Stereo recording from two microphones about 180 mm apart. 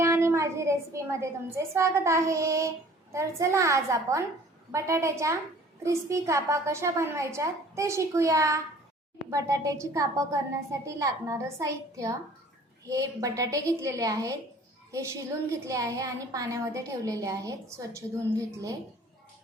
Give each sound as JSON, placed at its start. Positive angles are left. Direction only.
{"t": 0.0, "sound": "a woman's voice", "side_deg": -15}